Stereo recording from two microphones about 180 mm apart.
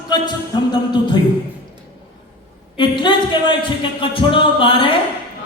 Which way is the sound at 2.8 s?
25° left (ahead or behind).